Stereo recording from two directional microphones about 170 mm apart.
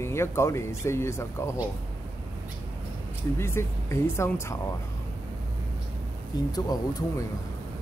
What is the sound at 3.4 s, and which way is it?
Speech, 15° left (ahead or behind).